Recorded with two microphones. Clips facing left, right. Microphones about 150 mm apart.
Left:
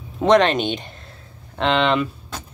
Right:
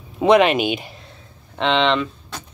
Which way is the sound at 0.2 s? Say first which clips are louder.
Right 1 dB; 5° right (ahead or behind).